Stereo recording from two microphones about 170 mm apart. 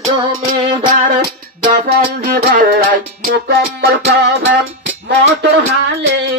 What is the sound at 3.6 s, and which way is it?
Music, 65° right (ahead or behind).